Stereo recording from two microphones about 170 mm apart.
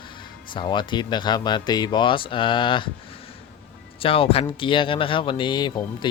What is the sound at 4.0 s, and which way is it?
Speech, 35° left (ahead or behind).